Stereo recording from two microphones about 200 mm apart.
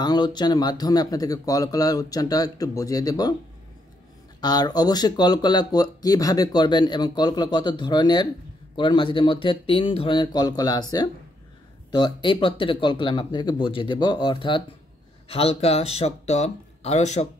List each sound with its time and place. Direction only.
0.0 s speech: 20° left (ahead or behind)
4.4 s speech: 20° left (ahead or behind)